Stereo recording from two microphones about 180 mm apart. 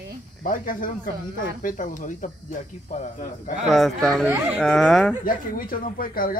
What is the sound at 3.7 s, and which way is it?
Speech, centre (ahead or behind).